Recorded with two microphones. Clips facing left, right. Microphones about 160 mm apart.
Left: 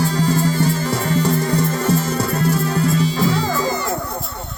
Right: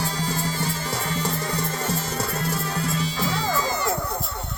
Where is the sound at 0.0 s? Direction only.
50° left (ahead or behind).